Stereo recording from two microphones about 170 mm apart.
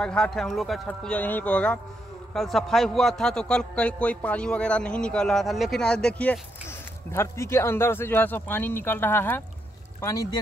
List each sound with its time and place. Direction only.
0.0 s a man's voice: 5° left (ahead or behind)